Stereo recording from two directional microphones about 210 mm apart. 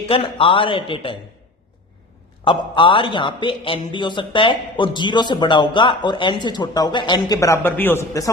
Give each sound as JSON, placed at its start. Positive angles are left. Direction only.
{"t": 0.1, "sound": "a man's voice", "side_deg": 25}
{"t": 2.4, "sound": "a man's voice", "side_deg": 20}